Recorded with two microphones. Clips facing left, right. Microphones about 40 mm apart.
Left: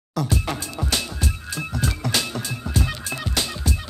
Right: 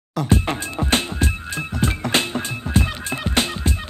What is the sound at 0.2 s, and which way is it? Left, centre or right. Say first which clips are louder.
Music: right 4 dB; right.